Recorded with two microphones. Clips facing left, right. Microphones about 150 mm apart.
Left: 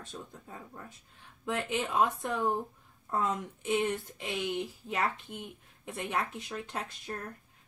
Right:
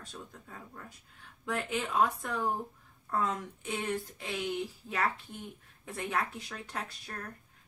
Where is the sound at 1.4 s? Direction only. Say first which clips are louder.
Left 1 dB; 20° left (ahead or behind).